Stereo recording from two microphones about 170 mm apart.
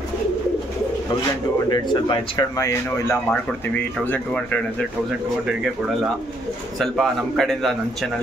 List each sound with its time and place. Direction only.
1.7 s speech: 25° left (ahead or behind)
6.8 s a man's voice: centre (ahead or behind)